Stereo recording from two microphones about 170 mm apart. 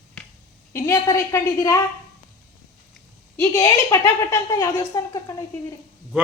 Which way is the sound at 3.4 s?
15° left (ahead or behind).